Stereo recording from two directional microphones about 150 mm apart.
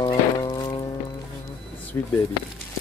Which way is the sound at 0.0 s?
30° left (ahead or behind).